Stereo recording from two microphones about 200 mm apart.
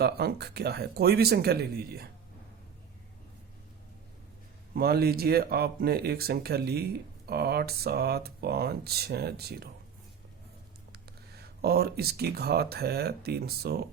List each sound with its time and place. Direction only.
0.0 s speech: 55° right (ahead or behind)
4.7 s speech: 50° right (ahead or behind)
11.6 s speech: 50° right (ahead or behind)